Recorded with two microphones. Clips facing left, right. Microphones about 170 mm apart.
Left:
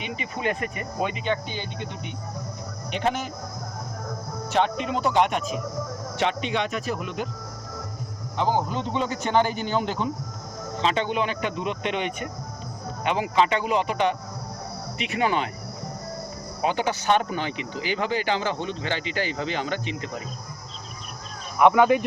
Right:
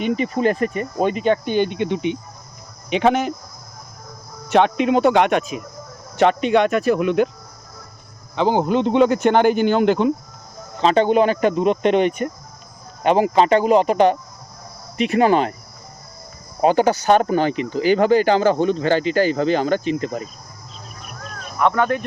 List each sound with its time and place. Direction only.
0.0 s speech: 40° right (ahead or behind); by 2.1 s 85° right
2.9 s speech: 70° right (ahead or behind)
4.5 s speech: 65° right (ahead or behind)
6.1 s speech: 50° right (ahead or behind); by 7.3 s 70° right (ahead or behind)
8.4 s speech: 80° right
10.8 s speech: 40° right (ahead or behind)
16.6 s speech: 40° right (ahead or behind)
21.6 s speech: 10° left (ahead or behind)